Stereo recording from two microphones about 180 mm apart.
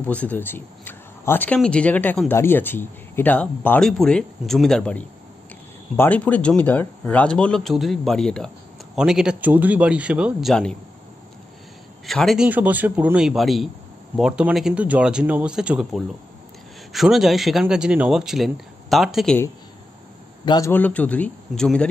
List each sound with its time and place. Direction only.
0.0 s speech: 10° left (ahead or behind)
10.5 s speech: 5° left (ahead or behind)
12.1 s speech: centre (ahead or behind)
20.4 s a man's voice: 20° left (ahead or behind)
20.7 s speech: 10° left (ahead or behind)